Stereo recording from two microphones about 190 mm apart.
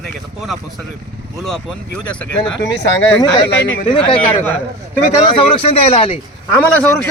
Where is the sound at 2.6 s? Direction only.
70° left (ahead or behind).